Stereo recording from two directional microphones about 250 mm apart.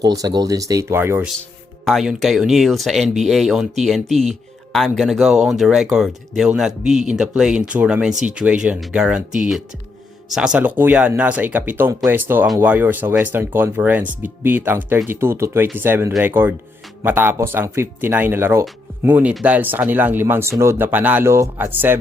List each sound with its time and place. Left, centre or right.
0.0 s speech: centre
1.4 s speech: centre